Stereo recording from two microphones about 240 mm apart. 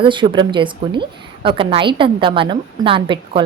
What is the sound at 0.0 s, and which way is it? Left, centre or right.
A woman's voice, right.